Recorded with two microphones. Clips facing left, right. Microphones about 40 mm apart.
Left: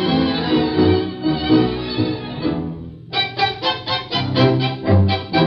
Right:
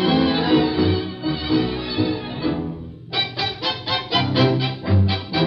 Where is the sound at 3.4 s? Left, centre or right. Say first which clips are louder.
Left 5 dB; left.